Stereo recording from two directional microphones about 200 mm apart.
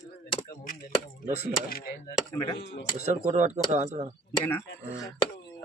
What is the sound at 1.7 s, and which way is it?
Speech, 50° left (ahead or behind).